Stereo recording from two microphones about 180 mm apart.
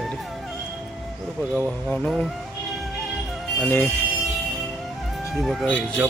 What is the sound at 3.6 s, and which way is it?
Speech, 15° left (ahead or behind).